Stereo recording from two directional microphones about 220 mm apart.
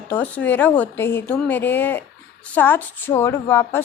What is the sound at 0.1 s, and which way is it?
A woman's voice, 5° left (ahead or behind).